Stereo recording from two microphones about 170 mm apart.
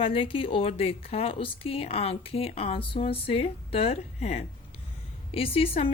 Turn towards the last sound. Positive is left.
turn(degrees=35)  # may be behind; listen again after turning